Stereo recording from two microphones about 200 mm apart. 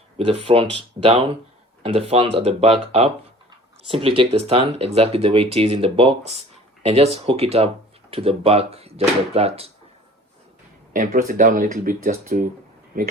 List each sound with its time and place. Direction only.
0.2 s speech: 25° right (ahead or behind)
10.9 s speech: 40° right (ahead or behind)